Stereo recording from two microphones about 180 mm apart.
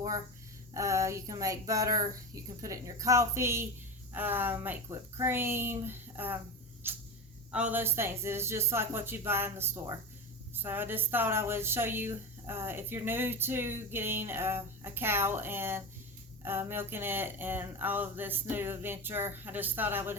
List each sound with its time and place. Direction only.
0.7 s speech: 15° right (ahead or behind)